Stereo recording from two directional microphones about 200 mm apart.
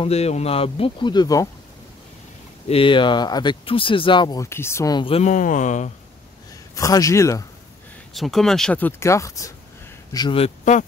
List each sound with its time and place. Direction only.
0.0 s speech: 30° left (ahead or behind)
2.7 s speech: 25° left (ahead or behind)
6.7 s speech: 15° left (ahead or behind)
8.1 s a man's voice: centre (ahead or behind); by 10.9 s 40° left (ahead or behind)